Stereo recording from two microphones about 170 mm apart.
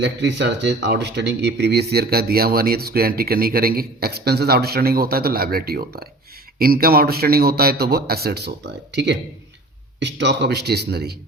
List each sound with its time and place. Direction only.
0.0 s speech: 90° right; by 11.2 s 70° right (ahead or behind)